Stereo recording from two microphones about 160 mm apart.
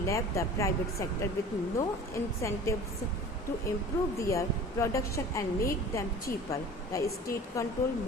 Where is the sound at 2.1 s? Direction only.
20° left (ahead or behind).